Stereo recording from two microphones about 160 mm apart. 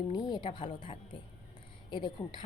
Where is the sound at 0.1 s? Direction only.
25° left (ahead or behind).